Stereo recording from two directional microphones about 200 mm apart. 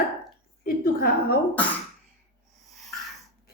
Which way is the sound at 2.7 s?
Centre (ahead or behind).